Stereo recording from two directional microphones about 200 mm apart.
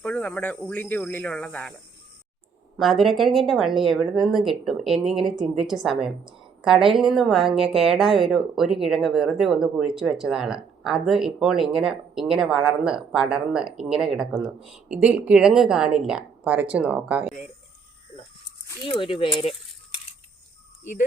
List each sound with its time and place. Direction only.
0.0 s speech: 10° left (ahead or behind)
2.7 s a woman's voice: centre (ahead or behind)
18.9 s speech: 25° left (ahead or behind)